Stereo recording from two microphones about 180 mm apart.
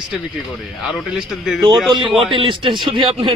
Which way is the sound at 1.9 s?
30° right (ahead or behind).